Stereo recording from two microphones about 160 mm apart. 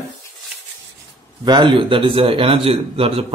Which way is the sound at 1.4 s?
30° right (ahead or behind).